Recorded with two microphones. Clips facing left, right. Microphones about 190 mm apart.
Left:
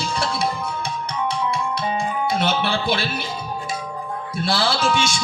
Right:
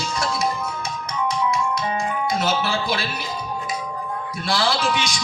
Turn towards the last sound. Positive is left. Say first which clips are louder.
# left 2 dB
turn(degrees=25)  # may be behind; listen again after turning